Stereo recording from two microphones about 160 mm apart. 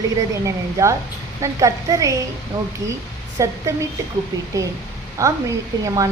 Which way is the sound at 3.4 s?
20° right (ahead or behind).